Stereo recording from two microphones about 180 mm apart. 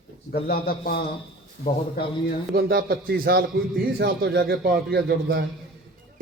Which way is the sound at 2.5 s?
55° right (ahead or behind).